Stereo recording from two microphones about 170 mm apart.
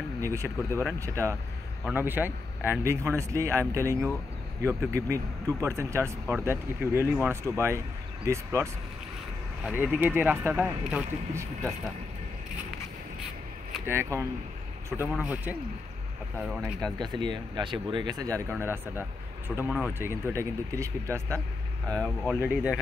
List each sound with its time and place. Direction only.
0.2 s speech: 15° right (ahead or behind)
9.7 s speech: 5° right (ahead or behind)
13.8 s speech: 15° right (ahead or behind)
16.8 s speech: 25° right (ahead or behind); by 22.8 s 5° right (ahead or behind)